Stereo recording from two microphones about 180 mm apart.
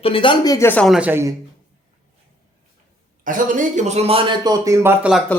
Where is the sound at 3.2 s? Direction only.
50° right (ahead or behind); by 5.2 s 5° right (ahead or behind).